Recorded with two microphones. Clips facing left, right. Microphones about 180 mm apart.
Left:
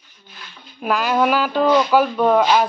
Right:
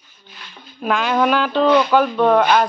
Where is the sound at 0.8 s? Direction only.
5° left (ahead or behind).